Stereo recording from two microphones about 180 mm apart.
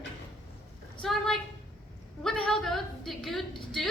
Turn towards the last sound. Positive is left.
turn(degrees=0)  # may be behind; listen again after turning